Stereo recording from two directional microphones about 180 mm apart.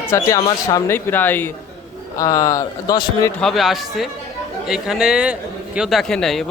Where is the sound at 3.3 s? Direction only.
Centre (ahead or behind).